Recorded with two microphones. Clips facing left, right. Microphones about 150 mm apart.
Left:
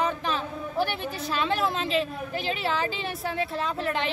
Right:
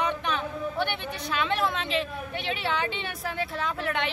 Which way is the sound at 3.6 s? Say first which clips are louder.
Right 1 dB; 35° left (ahead or behind).